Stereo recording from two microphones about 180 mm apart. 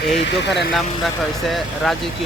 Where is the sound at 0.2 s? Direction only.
70° left (ahead or behind).